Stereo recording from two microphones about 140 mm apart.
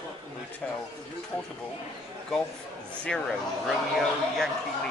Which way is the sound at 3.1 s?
5° left (ahead or behind).